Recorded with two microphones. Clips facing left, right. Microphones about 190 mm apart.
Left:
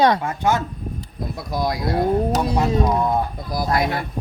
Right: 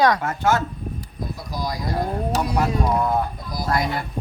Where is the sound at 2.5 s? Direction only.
25° left (ahead or behind).